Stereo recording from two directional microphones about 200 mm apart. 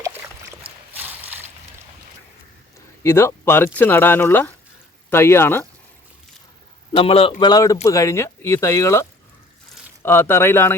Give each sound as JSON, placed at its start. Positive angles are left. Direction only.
{"t": 0.9, "sound": "a sound", "side_deg": -10}
{"t": 3.0, "sound": "speech", "side_deg": 10}
{"t": 6.9, "sound": "speech", "side_deg": 30}